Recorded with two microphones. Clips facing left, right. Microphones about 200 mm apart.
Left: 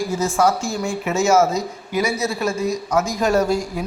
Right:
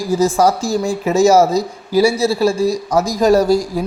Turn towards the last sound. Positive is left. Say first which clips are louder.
# right 5 dB
turn(degrees=-35)  # may be behind; listen again after turning